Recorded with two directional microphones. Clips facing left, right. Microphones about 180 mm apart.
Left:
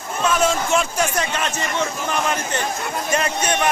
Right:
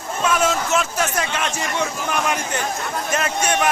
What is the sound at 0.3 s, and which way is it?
A man's voice, 5° right (ahead or behind).